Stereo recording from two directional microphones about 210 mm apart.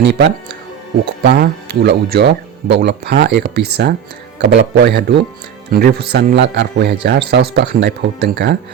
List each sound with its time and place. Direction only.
0.0 s a man's voice: 55° right (ahead or behind)